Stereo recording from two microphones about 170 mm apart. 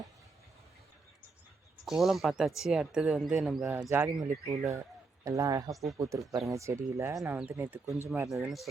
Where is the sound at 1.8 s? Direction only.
Centre (ahead or behind).